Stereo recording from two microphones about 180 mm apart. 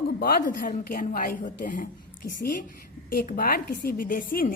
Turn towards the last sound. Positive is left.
turn(degrees=55)  # may be behind; listen again after turning